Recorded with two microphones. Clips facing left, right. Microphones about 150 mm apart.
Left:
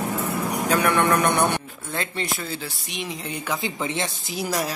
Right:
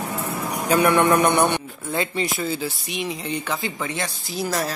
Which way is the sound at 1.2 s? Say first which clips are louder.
Right 2 dB; centre (ahead or behind).